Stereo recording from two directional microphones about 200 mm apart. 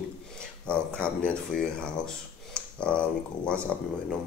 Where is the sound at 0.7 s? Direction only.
5° left (ahead or behind).